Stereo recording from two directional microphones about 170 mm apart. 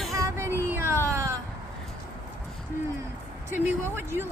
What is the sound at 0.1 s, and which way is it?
Child singing, 15° right (ahead or behind).